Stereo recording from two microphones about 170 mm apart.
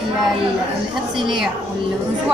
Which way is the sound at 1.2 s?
Centre (ahead or behind).